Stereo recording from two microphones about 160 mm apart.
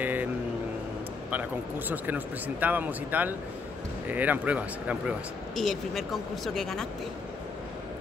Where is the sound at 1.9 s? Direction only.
10° right (ahead or behind).